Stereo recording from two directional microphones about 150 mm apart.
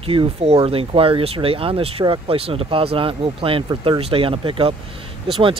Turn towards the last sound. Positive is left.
turn(degrees=-35)  # may be behind; listen again after turning